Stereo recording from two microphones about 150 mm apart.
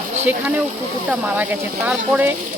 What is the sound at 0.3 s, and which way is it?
Speech, 10° right (ahead or behind).